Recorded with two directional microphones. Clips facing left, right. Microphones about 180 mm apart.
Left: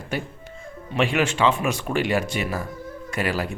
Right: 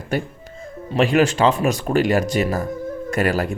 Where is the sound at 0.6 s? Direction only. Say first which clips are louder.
Right 4 dB; 35° right (ahead or behind).